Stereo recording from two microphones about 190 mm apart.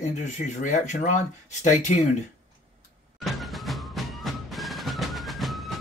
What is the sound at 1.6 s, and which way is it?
Speech, 40° left (ahead or behind).